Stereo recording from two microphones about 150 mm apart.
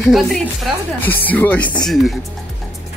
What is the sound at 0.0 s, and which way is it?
Speech, 5° left (ahead or behind).